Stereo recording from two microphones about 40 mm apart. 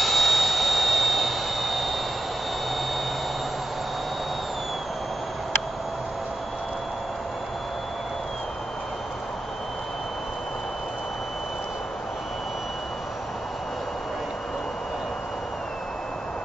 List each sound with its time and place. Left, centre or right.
0.0 s jet engine: centre